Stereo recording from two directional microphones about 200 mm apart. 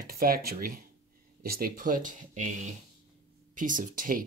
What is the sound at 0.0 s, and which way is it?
Speech, 45° right (ahead or behind).